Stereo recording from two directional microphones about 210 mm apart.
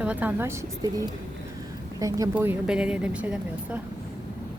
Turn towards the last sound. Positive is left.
turn(degrees=-5)  # may be behind; listen again after turning